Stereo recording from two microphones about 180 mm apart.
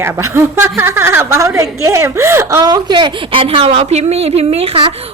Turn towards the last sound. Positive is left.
turn(degrees=-35)  # may be behind; listen again after turning